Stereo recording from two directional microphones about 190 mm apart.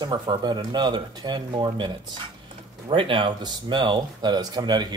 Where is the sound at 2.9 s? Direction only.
25° right (ahead or behind).